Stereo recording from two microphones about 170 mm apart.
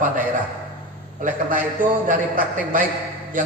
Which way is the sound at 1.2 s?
55° right (ahead or behind).